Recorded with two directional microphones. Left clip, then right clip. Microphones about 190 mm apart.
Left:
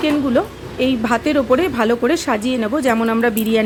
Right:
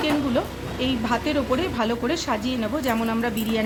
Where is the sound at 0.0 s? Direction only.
35° left (ahead or behind).